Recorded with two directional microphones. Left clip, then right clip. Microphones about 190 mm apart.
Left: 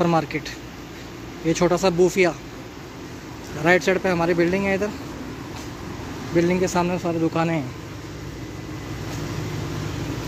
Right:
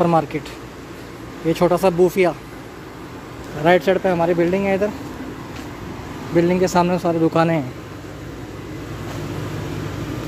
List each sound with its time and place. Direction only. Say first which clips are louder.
0.0 s speech: right 4 dB; 5° right (ahead or behind)
1.5 s speech: right 3 dB; 5° right (ahead or behind)
3.6 s speech: right 3 dB; 10° right (ahead or behind)
6.3 s speech: right 4 dB; 15° right (ahead or behind)